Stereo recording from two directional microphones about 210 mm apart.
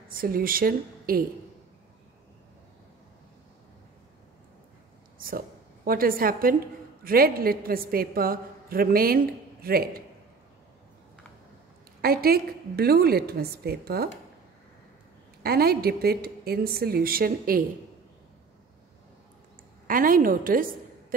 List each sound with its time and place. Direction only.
0.1 s a woman's voice: 45° right (ahead or behind)
5.9 s a woman's voice: 45° right (ahead or behind)
12.0 s a woman's voice: 45° right (ahead or behind)
15.4 s a woman's voice: 45° right (ahead or behind)
19.9 s a woman's voice: 40° right (ahead or behind)